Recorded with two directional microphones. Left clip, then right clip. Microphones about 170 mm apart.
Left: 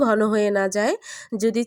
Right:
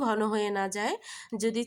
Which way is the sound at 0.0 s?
30° left (ahead or behind).